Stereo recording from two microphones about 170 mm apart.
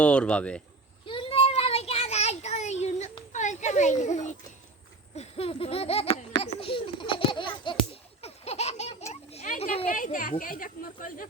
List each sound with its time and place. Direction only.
0.0 s speech: 5° left (ahead or behind)
1.0 s child singing: 30° left (ahead or behind)
5.1 s a sound: 35° left (ahead or behind)
6.4 s baby laughter: 35° left (ahead or behind)
9.3 s children playing: 40° left (ahead or behind)
9.9 s speech: 50° left (ahead or behind)